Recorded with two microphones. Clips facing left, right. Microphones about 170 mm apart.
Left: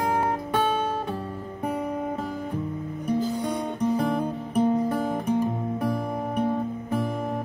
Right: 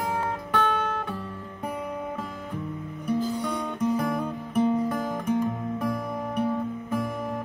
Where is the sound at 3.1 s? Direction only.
25° left (ahead or behind).